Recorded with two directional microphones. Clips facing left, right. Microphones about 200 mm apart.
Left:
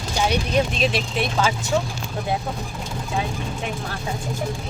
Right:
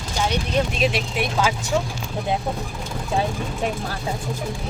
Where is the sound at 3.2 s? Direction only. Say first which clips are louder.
Right 4 dB; 35° right (ahead or behind).